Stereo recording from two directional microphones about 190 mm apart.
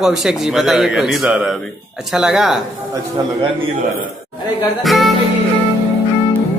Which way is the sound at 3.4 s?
25° right (ahead or behind).